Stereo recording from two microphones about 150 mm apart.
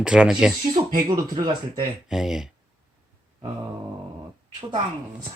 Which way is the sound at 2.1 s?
5° right (ahead or behind).